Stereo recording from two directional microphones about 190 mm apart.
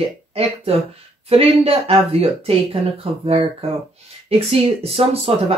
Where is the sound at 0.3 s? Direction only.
30° right (ahead or behind).